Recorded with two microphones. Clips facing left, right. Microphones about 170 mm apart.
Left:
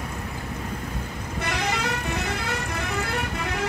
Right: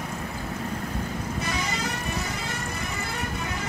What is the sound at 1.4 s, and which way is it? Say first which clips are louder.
Vehicle: left 7 dB; 60° left (ahead or behind).